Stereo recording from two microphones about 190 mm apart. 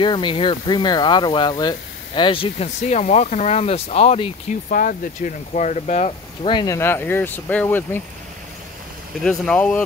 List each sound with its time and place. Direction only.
0.0 s speech: 25° left (ahead or behind)
9.2 s speech: 5° left (ahead or behind)